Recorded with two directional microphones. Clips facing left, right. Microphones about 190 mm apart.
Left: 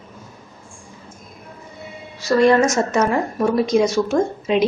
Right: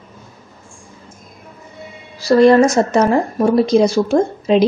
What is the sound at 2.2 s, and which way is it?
A woman's voice, 35° right (ahead or behind).